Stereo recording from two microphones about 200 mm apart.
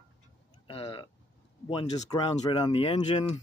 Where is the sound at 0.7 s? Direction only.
25° left (ahead or behind).